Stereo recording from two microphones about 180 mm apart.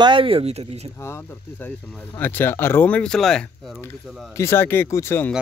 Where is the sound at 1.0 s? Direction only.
10° left (ahead or behind).